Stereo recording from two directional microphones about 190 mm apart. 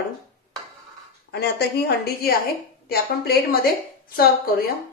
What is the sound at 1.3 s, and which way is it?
A woman's voice, 60° left (ahead or behind).